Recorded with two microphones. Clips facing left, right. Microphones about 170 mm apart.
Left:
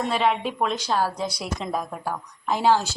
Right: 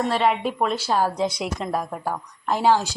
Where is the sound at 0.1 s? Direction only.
Centre (ahead or behind).